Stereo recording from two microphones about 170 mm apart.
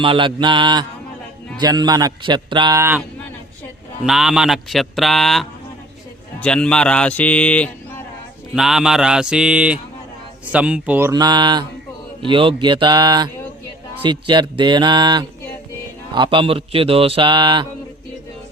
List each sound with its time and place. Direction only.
0.0 s speech: 30° right (ahead or behind)
4.0 s speech: centre (ahead or behind)
11.1 s speech: 25° right (ahead or behind)